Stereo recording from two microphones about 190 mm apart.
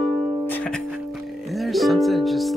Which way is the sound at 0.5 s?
5° left (ahead or behind).